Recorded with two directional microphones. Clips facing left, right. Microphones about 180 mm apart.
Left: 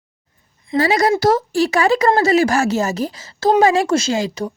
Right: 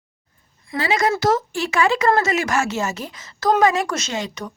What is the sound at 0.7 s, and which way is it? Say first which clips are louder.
A woman's voice: left 5 dB; 40° left (ahead or behind).